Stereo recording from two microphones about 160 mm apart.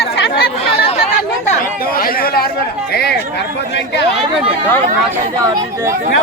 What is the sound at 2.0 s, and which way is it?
Chatter, 65° left (ahead or behind).